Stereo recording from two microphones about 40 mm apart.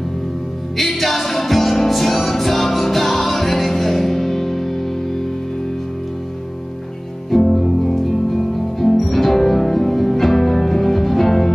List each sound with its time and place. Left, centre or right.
0.7 s music: centre
7.2 s music: centre